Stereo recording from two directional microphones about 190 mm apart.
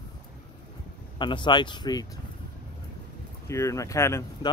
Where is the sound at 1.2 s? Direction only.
25° left (ahead or behind).